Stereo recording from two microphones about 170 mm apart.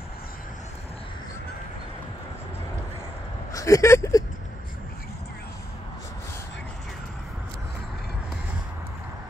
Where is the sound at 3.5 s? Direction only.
20° left (ahead or behind).